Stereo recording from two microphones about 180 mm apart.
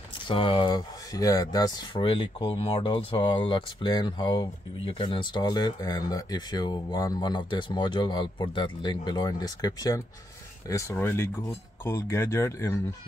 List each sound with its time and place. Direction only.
0.3 s speech: 30° left (ahead or behind)